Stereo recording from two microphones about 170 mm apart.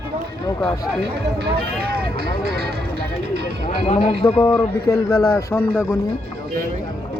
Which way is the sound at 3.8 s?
35° left (ahead or behind).